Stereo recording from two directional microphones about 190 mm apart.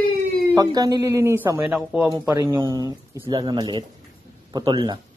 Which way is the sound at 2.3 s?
15° right (ahead or behind).